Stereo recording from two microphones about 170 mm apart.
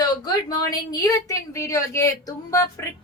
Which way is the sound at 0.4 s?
20° left (ahead or behind).